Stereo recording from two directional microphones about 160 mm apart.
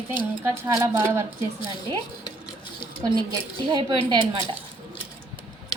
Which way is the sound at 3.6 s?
30° right (ahead or behind).